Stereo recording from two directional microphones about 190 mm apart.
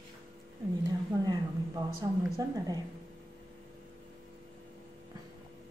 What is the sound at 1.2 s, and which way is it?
A woman's voice, 20° right (ahead or behind).